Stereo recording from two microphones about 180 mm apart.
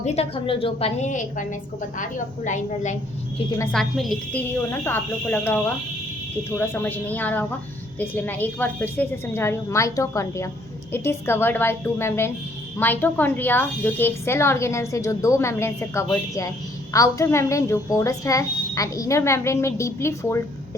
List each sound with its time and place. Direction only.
0.0 s a woman's voice: 35° left (ahead or behind)
3.6 s a woman's voice: 5° left (ahead or behind)